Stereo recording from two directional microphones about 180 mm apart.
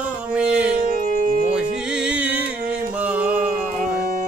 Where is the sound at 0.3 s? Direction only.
5° right (ahead or behind).